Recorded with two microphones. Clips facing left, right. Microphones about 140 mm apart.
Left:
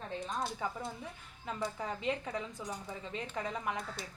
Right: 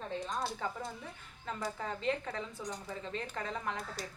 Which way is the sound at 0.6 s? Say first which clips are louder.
Left 1 dB; 15° left (ahead or behind).